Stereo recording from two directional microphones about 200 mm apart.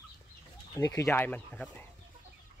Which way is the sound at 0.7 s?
15° left (ahead or behind).